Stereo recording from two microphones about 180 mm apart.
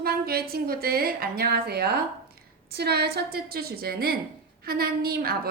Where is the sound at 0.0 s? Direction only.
60° right (ahead or behind).